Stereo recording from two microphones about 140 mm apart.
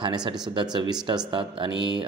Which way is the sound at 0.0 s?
30° right (ahead or behind).